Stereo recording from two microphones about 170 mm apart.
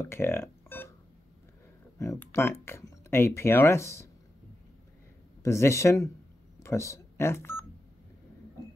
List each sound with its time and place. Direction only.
0.0 s music: 15° left (ahead or behind)
2.0 s speech: 15° left (ahead or behind)
5.4 s speech: 15° left (ahead or behind)